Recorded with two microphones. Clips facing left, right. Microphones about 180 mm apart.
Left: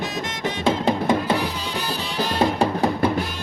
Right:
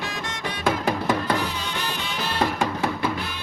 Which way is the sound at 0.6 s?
25° left (ahead or behind).